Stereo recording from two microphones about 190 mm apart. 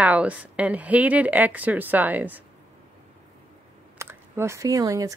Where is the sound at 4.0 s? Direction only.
15° right (ahead or behind).